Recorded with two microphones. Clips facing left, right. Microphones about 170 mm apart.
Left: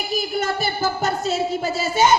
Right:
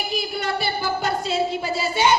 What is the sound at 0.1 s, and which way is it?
Speech, 45° left (ahead or behind).